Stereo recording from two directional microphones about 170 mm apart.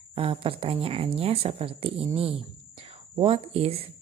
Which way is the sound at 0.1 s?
30° right (ahead or behind).